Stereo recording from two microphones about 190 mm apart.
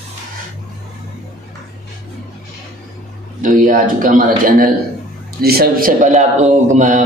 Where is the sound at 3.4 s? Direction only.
45° right (ahead or behind).